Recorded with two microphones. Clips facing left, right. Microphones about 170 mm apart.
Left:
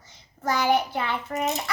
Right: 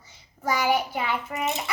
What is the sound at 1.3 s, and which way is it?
Speech, 40° left (ahead or behind).